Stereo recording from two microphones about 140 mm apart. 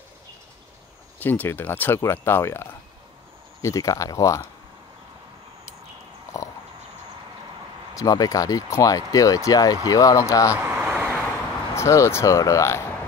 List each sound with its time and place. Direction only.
1.2 s speech: 15° left (ahead or behind)
7.9 s speech: 25° left (ahead or behind)
10.5 s a sound: 10° right (ahead or behind)
11.7 s speech: 20° left (ahead or behind)